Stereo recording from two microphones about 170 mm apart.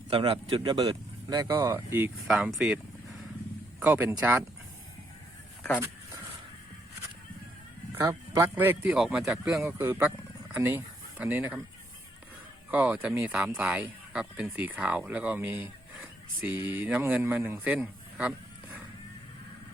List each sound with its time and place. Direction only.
0.1 s speech: 30° right (ahead or behind); by 2.1 s 15° right (ahead or behind)
2.2 s speech: 5° right (ahead or behind)
8.0 s speech: 15° right (ahead or behind)
12.7 s speech: 10° right (ahead or behind)